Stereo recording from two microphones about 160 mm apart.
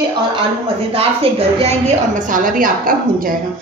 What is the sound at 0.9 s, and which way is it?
A woman's voice, 35° right (ahead or behind).